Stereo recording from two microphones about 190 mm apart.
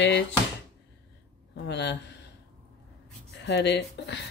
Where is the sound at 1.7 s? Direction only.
65° left (ahead or behind).